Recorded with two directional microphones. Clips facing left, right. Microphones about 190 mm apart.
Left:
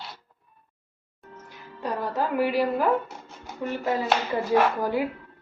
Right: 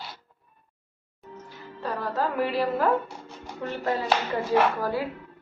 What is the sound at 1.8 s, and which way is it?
A woman's voice, 15° left (ahead or behind).